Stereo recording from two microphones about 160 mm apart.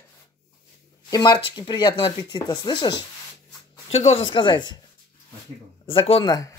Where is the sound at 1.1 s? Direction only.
25° left (ahead or behind).